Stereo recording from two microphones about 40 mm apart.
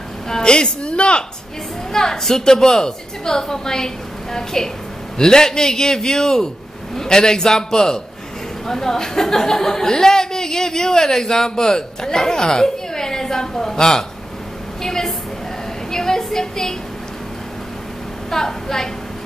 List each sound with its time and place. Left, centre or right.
0.3 s a woman's voice: centre
1.9 s a woman's voice: centre
18.3 s a woman's voice: centre